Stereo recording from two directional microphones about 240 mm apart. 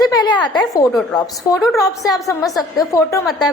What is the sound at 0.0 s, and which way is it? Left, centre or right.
A woman's voice, centre.